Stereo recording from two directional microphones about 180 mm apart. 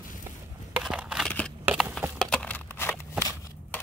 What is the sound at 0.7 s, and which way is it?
Crushing, 5° right (ahead or behind).